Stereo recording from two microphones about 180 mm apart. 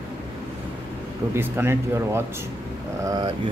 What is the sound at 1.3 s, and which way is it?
Speech, 15° right (ahead or behind).